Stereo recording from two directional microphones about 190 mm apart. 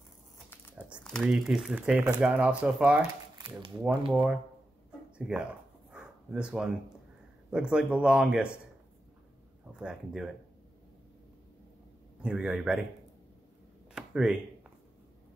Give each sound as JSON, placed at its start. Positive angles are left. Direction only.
{"t": 0.7, "sound": "speech", "side_deg": -5}
{"t": 3.3, "sound": "speech", "side_deg": -25}
{"t": 4.1, "sound": "speech", "side_deg": 0}
{"t": 5.1, "sound": "a sound", "side_deg": -5}
{"t": 7.5, "sound": "speech", "side_deg": -5}
{"t": 9.7, "sound": "speech", "side_deg": -5}
{"t": 12.2, "sound": "speech", "side_deg": -5}
{"t": 13.9, "sound": "a sound", "side_deg": -5}